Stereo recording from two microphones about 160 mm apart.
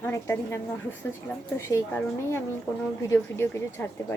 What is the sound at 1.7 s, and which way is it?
Speech, 15° left (ahead or behind).